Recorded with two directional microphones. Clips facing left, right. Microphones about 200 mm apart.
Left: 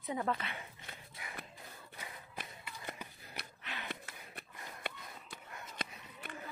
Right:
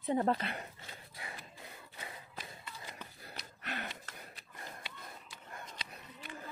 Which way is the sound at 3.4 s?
60° left (ahead or behind).